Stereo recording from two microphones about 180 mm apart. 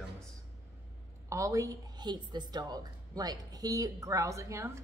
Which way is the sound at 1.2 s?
20° right (ahead or behind).